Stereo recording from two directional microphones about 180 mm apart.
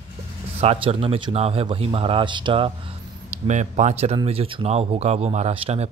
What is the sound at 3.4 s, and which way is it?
Speech, 40° right (ahead or behind).